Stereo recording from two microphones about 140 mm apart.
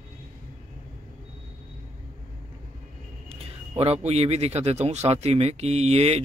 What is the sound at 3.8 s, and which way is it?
Speech, 45° right (ahead or behind).